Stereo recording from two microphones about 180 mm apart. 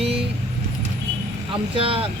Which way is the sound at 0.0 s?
30° right (ahead or behind).